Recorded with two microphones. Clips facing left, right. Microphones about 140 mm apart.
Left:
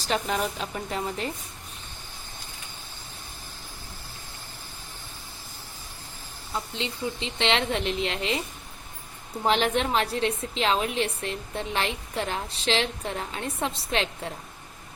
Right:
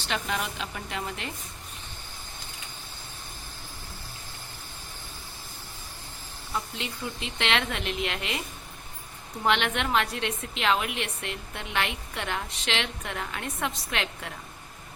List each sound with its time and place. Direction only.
0.0 s a woman's voice: 40° left (ahead or behind)
6.7 s a woman's voice: 25° left (ahead or behind)
9.5 s a woman's voice: 35° left (ahead or behind)